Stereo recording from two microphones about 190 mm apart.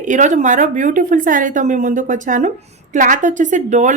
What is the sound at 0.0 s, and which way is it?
A woman's voice, 40° right (ahead or behind).